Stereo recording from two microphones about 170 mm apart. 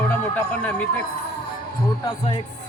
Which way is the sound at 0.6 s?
5° left (ahead or behind).